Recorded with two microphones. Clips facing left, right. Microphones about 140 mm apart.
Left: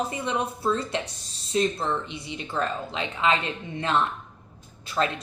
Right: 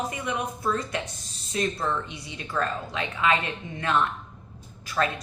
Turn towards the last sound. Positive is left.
turn(degrees=25)  # may be behind; listen again after turning